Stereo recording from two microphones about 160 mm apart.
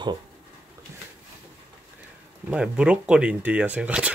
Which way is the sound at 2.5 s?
5° right (ahead or behind).